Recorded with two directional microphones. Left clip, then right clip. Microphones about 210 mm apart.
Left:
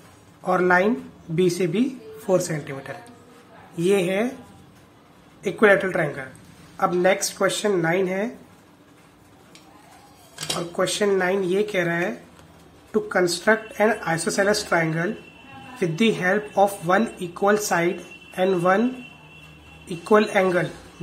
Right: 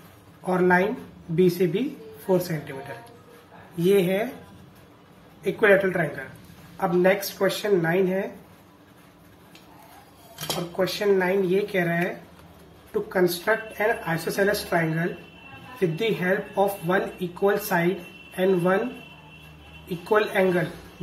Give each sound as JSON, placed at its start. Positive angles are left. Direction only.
{"t": 0.5, "sound": "speech", "side_deg": 30}
{"t": 3.7, "sound": "speech", "side_deg": 25}
{"t": 5.4, "sound": "speech", "side_deg": 35}
{"t": 10.8, "sound": "speech", "side_deg": 35}
{"t": 13.7, "sound": "speech", "side_deg": 35}
{"t": 19.9, "sound": "speech", "side_deg": 35}